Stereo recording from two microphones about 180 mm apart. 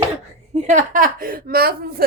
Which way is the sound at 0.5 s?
40° right (ahead or behind).